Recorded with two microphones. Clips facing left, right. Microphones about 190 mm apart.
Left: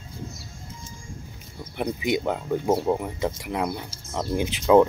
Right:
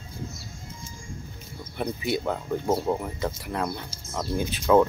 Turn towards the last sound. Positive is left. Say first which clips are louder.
# left 3 dB
turn(degrees=15)  # may be behind; listen again after turning